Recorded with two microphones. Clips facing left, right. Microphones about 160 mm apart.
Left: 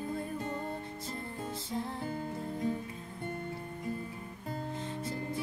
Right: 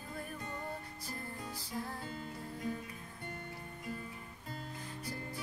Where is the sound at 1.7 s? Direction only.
25° left (ahead or behind).